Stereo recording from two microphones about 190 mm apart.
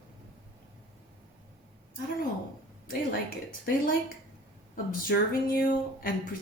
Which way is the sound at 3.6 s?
50° left (ahead or behind).